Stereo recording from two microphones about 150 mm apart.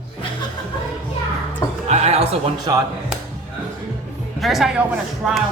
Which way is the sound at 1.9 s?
45° right (ahead or behind).